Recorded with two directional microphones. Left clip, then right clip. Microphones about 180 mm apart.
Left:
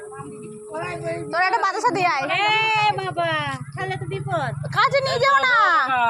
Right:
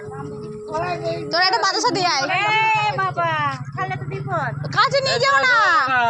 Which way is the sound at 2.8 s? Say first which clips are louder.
Right 1 dB; 90° left.